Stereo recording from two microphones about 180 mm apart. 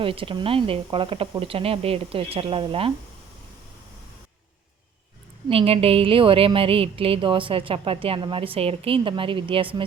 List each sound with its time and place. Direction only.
0.0 s a woman's voice: 30° right (ahead or behind)
5.5 s a woman's voice: 30° right (ahead or behind)